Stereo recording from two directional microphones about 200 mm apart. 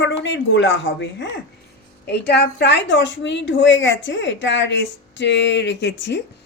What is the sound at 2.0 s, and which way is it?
A woman's voice, 55° left (ahead or behind).